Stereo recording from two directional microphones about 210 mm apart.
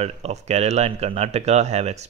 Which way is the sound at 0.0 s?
30° right (ahead or behind).